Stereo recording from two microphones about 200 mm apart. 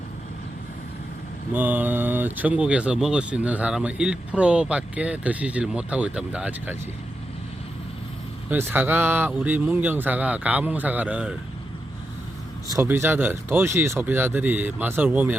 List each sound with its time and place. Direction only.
1.5 s speech: 10° right (ahead or behind)
8.4 s speech: 10° right (ahead or behind)
12.7 s speech: 10° right (ahead or behind)